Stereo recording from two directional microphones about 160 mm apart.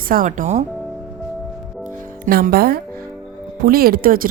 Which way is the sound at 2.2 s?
65° right (ahead or behind).